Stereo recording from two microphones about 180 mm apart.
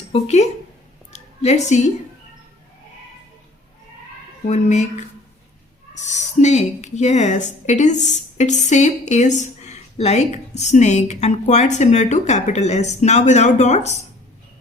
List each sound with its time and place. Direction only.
0.1 s a woman's voice: 40° left (ahead or behind)
1.1 s a sound: 40° left (ahead or behind)
4.4 s a woman's voice: 40° left (ahead or behind)